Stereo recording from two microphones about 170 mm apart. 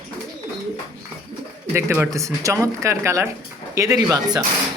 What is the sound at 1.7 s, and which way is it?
Speech, 15° right (ahead or behind).